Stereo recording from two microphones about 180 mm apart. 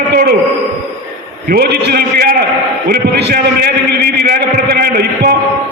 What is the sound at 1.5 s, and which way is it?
A man's voice, 60° right (ahead or behind).